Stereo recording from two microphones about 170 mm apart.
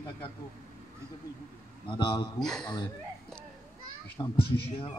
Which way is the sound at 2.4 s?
5° left (ahead or behind).